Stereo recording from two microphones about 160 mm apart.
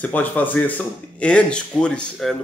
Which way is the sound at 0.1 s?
10° left (ahead or behind).